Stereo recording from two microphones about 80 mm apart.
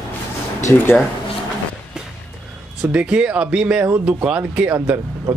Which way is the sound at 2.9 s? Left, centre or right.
Centre.